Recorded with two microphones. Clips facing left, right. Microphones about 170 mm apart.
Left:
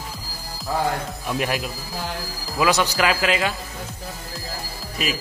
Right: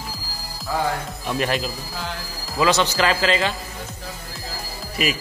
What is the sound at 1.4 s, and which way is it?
A man's voice, 10° left (ahead or behind).